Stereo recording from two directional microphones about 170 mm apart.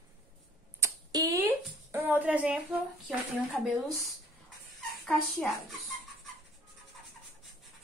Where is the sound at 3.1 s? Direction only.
Centre (ahead or behind).